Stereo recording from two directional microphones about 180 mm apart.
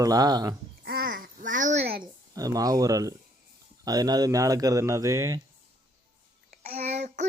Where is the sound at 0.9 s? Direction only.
55° right (ahead or behind).